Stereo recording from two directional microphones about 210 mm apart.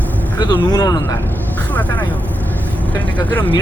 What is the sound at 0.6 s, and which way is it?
Speech, 20° left (ahead or behind).